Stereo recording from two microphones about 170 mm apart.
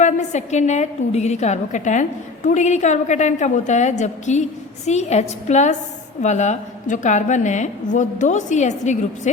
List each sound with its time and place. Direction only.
0.0 s a woman's voice: 45° left (ahead or behind)